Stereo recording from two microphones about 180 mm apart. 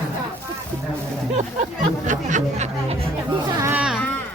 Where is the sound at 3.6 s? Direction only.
10° right (ahead or behind).